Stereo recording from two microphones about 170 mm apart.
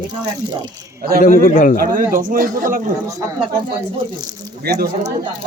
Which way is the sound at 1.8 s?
55° right (ahead or behind).